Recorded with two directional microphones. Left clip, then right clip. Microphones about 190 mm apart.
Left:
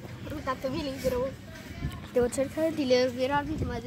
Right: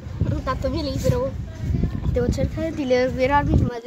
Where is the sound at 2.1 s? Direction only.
40° left (ahead or behind).